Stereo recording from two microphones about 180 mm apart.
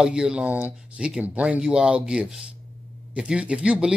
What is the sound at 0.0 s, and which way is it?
A man's voice, 5° right (ahead or behind).